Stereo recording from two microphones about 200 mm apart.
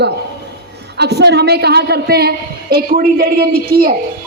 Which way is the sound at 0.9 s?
55° right (ahead or behind).